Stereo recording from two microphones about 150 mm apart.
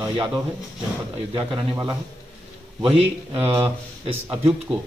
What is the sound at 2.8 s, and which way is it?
Speech, 40° right (ahead or behind).